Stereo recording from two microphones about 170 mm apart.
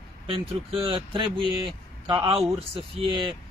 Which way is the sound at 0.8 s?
35° right (ahead or behind).